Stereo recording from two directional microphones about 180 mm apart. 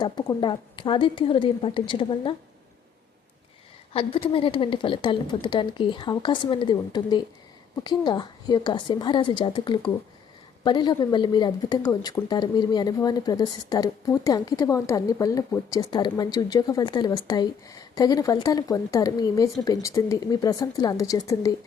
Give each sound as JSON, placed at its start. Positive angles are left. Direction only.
{"t": 0.0, "sound": "speech", "side_deg": 25}
{"t": 3.9, "sound": "speech", "side_deg": 30}